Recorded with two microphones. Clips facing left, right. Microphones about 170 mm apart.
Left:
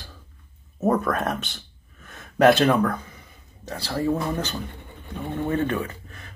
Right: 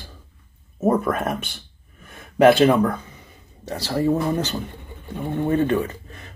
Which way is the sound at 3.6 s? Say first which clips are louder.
Right 4 dB; 15° right (ahead or behind).